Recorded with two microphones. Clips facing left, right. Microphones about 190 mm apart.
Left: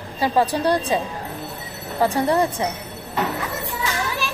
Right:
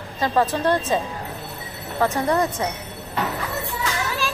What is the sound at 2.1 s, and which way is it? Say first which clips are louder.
Speech: left 2 dB; 30° left (ahead or behind).